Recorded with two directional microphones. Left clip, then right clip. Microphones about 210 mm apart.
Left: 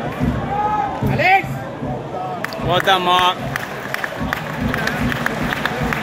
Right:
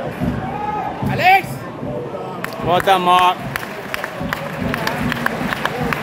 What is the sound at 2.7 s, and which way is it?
Speech, 5° right (ahead or behind).